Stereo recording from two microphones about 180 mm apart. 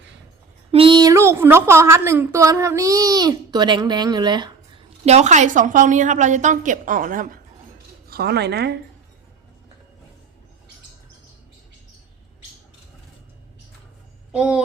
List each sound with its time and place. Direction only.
0.7 s a woman's voice: 30° right (ahead or behind)
5.0 s a woman's voice: 40° right (ahead or behind)
8.1 s a woman's voice: 65° right (ahead or behind)
14.3 s speech: 5° right (ahead or behind)